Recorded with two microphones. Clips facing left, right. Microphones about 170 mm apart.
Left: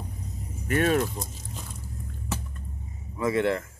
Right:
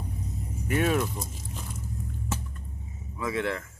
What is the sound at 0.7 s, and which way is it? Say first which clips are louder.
Speech: left 2 dB; 50° left (ahead or behind).